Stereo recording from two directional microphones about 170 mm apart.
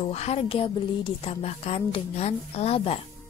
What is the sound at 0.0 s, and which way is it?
Speech, 40° left (ahead or behind).